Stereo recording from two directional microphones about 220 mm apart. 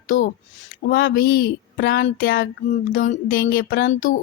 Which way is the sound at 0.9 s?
45° left (ahead or behind).